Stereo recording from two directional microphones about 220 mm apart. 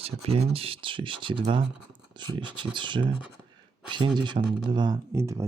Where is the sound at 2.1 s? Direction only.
20° right (ahead or behind).